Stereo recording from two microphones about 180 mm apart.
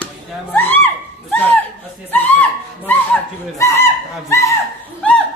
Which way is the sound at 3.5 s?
15° left (ahead or behind).